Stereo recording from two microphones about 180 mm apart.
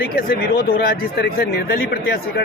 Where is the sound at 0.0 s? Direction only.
60° left (ahead or behind).